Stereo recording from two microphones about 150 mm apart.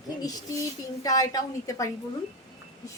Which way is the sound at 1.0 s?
25° left (ahead or behind).